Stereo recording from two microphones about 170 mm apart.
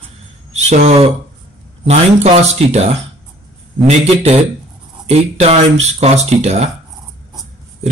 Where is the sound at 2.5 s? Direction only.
40° right (ahead or behind).